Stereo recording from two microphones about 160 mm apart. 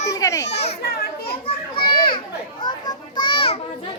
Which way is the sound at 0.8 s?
75° left (ahead or behind).